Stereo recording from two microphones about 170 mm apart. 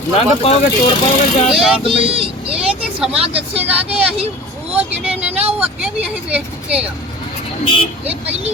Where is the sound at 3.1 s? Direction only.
35° right (ahead or behind).